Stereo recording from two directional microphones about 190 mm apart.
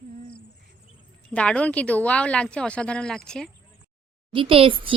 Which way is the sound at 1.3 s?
5° left (ahead or behind).